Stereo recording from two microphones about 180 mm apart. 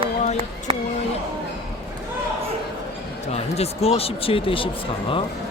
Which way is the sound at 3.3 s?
35° left (ahead or behind).